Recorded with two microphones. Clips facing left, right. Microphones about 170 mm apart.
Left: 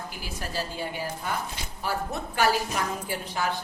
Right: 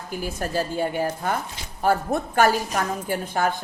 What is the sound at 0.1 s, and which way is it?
Speech, 50° right (ahead or behind).